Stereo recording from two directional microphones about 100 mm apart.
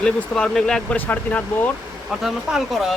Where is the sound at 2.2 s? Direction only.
5° right (ahead or behind).